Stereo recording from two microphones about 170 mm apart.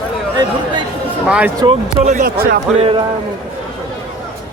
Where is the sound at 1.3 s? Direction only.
5° right (ahead or behind).